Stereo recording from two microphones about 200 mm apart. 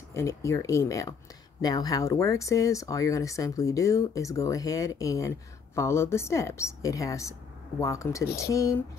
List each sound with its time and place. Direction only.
0.1 s speech: 15° left (ahead or behind)